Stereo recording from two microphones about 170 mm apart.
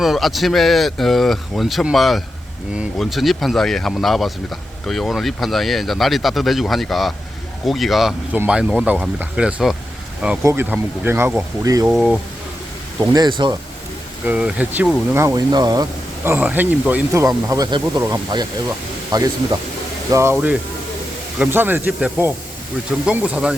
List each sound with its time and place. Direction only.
0.0 s speech: centre (ahead or behind); by 11.9 s 20° right (ahead or behind)
11.9 s speech: centre (ahead or behind)
13.0 s speech: 25° right (ahead or behind)
14.3 s speech: 10° right (ahead or behind)